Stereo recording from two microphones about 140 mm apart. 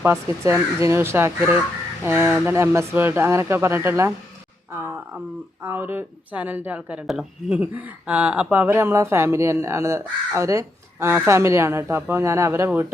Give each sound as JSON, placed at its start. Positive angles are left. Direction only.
{"t": 0.0, "sound": "a woman's voice", "side_deg": -15}